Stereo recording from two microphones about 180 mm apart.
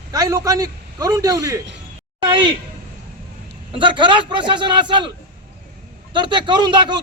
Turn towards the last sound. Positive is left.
turn(degrees=-25)  # may be behind; listen again after turning